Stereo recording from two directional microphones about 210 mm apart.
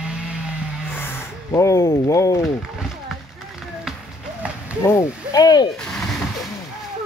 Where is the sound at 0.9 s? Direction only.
10° left (ahead or behind).